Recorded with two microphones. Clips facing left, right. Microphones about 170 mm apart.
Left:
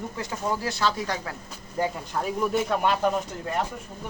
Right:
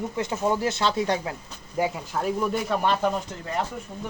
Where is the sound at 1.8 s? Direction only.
5° right (ahead or behind).